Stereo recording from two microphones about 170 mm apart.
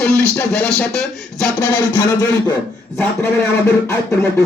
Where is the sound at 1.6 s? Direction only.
20° left (ahead or behind).